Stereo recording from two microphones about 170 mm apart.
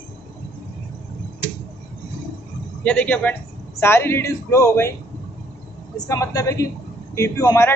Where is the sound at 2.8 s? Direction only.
10° left (ahead or behind).